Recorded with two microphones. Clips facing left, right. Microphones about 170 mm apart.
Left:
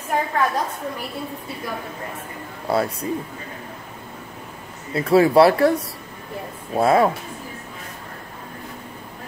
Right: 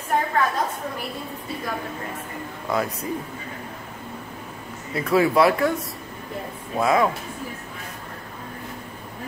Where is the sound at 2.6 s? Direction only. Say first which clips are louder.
Left 4 dB; 35° left (ahead or behind).